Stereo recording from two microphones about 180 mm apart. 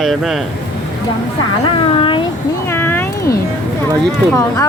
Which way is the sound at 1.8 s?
30° left (ahead or behind).